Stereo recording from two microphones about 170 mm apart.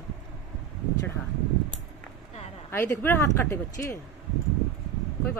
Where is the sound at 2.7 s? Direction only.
10° left (ahead or behind).